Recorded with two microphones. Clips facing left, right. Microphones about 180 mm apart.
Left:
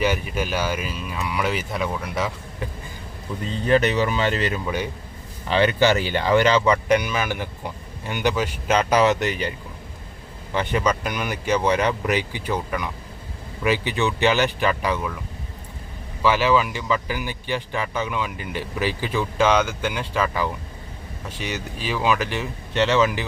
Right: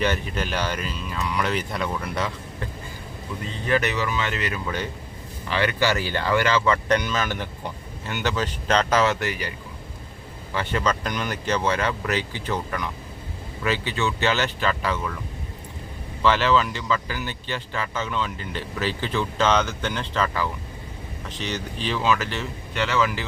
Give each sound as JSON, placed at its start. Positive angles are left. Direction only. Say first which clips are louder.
{"t": 0.0, "sound": "speech", "louder": "left 2 dB", "side_deg": 10}
{"t": 3.7, "sound": "speech", "louder": "left 5 dB", "side_deg": 30}
{"t": 4.6, "sound": "speech", "louder": "left 3 dB", "side_deg": 10}
{"t": 5.5, "sound": "speech", "louder": "left 5 dB", "side_deg": 25}
{"t": 10.5, "sound": "speech", "louder": "left 3 dB", "side_deg": 15}
{"t": 16.2, "sound": "speech", "louder": "left 1 dB", "side_deg": 10}